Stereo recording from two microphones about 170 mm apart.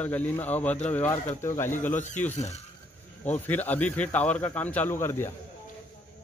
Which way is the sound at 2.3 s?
40° left (ahead or behind).